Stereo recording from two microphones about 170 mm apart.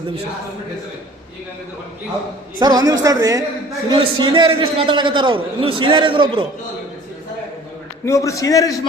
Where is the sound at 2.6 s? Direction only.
25° right (ahead or behind).